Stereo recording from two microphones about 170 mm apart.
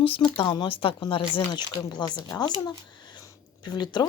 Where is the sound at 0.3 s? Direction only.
30° left (ahead or behind).